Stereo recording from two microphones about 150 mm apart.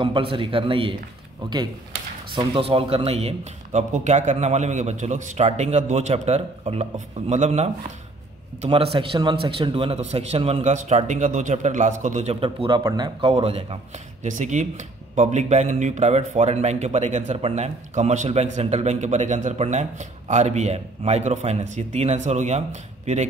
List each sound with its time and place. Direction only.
0.0 s a man's voice: 35° right (ahead or behind)
2.3 s speech: 35° right (ahead or behind)
8.6 s speech: 35° right (ahead or behind); by 12.4 s 50° right (ahead or behind)
12.4 s a man's voice: 35° right (ahead or behind)
14.2 s speech: 55° right (ahead or behind)